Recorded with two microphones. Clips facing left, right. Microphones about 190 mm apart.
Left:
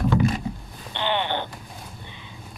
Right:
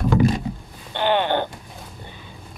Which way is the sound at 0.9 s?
45° right (ahead or behind).